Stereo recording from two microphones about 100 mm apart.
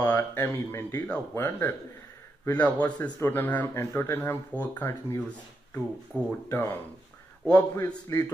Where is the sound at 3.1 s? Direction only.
20° left (ahead or behind).